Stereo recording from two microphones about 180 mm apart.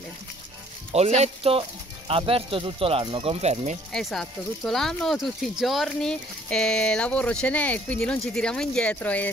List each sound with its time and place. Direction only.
0.9 s speech: 35° right (ahead or behind)
3.9 s speech: centre (ahead or behind)